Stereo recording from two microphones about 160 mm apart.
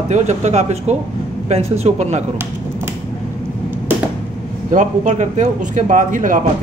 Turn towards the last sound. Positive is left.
turn(degrees=-55)  # may be behind; listen again after turning